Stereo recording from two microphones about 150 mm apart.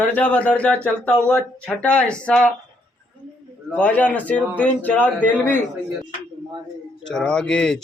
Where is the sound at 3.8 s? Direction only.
10° left (ahead or behind).